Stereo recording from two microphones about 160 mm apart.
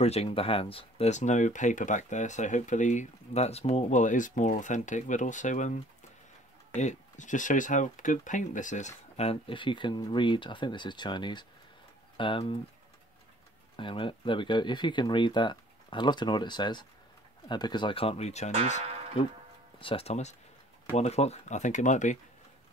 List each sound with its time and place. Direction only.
0.0 s speech: 40° left (ahead or behind)
13.7 s speech: 30° left (ahead or behind)
19.8 s speech: 35° left (ahead or behind)